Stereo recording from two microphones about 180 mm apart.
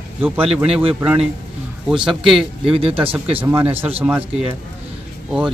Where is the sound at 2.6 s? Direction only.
30° right (ahead or behind).